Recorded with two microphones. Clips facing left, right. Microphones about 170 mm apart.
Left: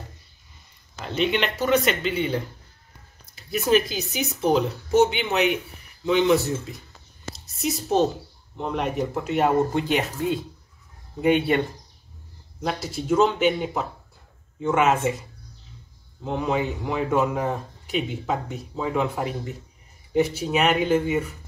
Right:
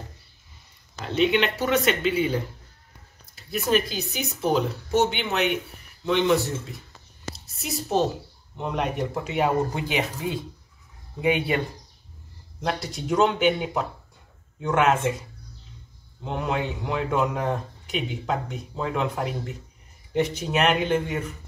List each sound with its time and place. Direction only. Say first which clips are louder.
1.0 s a man's voice: right 2 dB; centre (ahead or behind)
3.5 s a man's voice: left 3 dB; centre (ahead or behind)
12.6 s a man's voice: left 2 dB; 5° left (ahead or behind)
16.3 s a man's voice: left 3 dB; centre (ahead or behind)